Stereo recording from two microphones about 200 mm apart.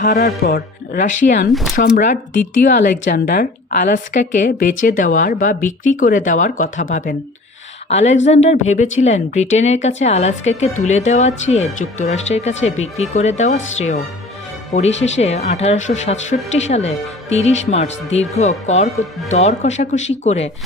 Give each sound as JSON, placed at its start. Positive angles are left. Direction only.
{"t": 0.0, "sound": "a woman's voice", "side_deg": 45}